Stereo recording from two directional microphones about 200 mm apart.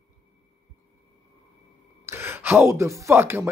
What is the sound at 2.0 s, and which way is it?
Speech, 10° right (ahead or behind).